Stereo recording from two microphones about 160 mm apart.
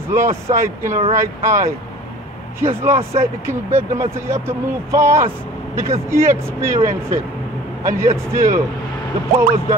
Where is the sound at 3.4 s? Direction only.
15° right (ahead or behind).